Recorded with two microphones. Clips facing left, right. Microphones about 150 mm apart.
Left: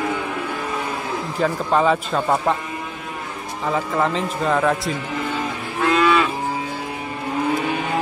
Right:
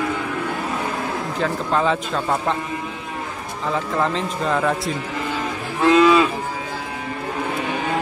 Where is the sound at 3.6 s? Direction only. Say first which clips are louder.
Left 1 dB; 5° left (ahead or behind).